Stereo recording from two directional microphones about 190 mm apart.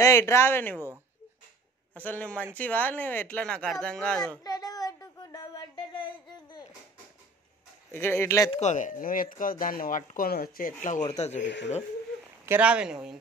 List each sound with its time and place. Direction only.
0.0 s speech: 15° left (ahead or behind)
2.0 s speech: 5° left (ahead or behind)
4.4 s child singing: 20° left (ahead or behind)
7.9 s speech: 10° left (ahead or behind)
8.5 s speech: 35° left (ahead or behind)
11.4 s speech: 70° left (ahead or behind)
12.4 s speech: 5° right (ahead or behind)